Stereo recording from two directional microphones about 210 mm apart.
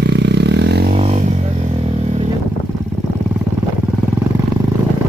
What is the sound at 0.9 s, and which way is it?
Music, 30° right (ahead or behind).